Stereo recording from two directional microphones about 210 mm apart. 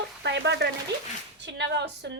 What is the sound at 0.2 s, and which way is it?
A woman's voice, 55° right (ahead or behind).